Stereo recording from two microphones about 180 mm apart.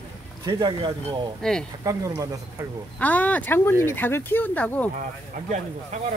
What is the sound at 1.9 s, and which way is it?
Speech, 20° right (ahead or behind).